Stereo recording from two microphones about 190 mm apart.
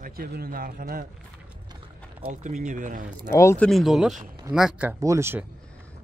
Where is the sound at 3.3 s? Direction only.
10° left (ahead or behind).